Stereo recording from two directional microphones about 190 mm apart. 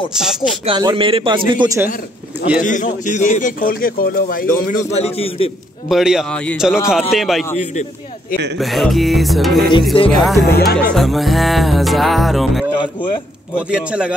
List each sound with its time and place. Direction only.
0.1 s music: 5° right (ahead or behind)
0.7 s a man's voice: 25° right (ahead or behind)
2.6 s a man's voice: 40° left (ahead or behind)
4.9 s a man's voice: 30° left (ahead or behind)
5.9 s music: centre (ahead or behind)
8.5 s music: centre (ahead or behind)
10.5 s speech: 55° left (ahead or behind)
10.9 s music: centre (ahead or behind)
12.7 s a man's voice: 25° left (ahead or behind)
13.6 s music: 5° right (ahead or behind)